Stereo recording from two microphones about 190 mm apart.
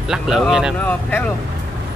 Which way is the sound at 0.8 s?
10° left (ahead or behind).